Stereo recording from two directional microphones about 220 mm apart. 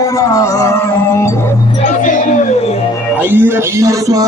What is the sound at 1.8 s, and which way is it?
Music, 35° left (ahead or behind).